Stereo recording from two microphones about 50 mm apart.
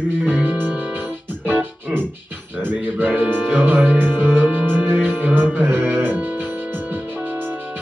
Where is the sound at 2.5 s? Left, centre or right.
Right.